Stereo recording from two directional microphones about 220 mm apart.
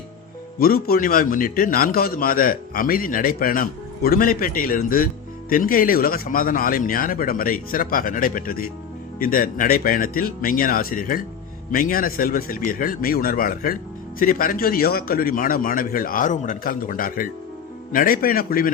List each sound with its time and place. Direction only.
0.6 s a man's voice: 40° left (ahead or behind)